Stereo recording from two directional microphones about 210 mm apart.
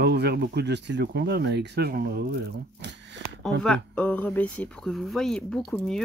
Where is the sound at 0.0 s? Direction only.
50° right (ahead or behind).